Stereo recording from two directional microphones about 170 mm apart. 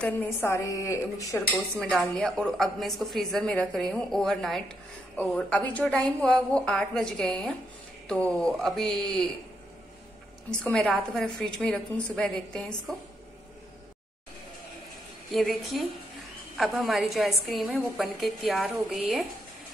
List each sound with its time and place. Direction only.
0.0 s a woman's voice: 10° left (ahead or behind)
1.8 s a woman's voice: centre (ahead or behind)
10.5 s a woman's voice: 5° left (ahead or behind)
15.3 s a woman's voice: centre (ahead or behind)